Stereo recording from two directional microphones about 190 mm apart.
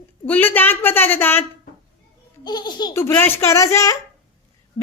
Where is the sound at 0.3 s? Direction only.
10° left (ahead or behind).